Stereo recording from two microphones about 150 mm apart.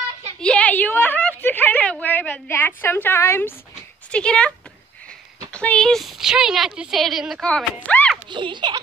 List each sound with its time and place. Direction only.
0.4 s a woman's voice: 10° left (ahead or behind)
5.5 s a woman's voice: 5° left (ahead or behind)
7.8 s a sound: 10° left (ahead or behind)
8.3 s speech: 30° right (ahead or behind)